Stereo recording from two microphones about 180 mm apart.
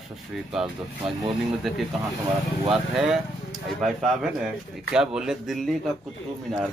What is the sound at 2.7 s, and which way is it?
Speech, centre (ahead or behind).